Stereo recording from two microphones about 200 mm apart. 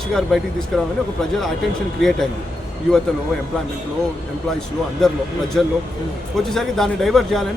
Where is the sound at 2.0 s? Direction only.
Centre (ahead or behind).